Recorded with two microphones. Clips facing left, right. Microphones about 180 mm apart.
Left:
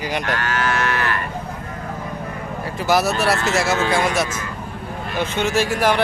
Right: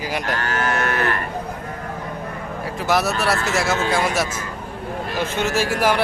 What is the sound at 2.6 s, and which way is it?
A man's voice, centre (ahead or behind).